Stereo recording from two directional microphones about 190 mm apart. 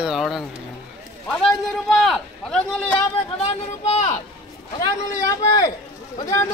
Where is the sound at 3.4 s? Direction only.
35° left (ahead or behind).